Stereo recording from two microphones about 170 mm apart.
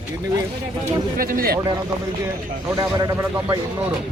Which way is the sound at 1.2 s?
55° right (ahead or behind).